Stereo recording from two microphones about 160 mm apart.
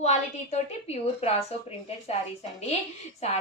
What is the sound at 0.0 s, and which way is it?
A woman's voice, 45° left (ahead or behind).